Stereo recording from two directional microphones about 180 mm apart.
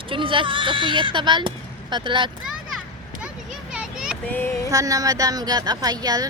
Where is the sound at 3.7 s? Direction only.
5° right (ahead or behind).